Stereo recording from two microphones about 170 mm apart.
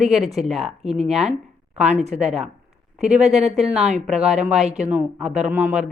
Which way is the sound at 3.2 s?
40° right (ahead or behind).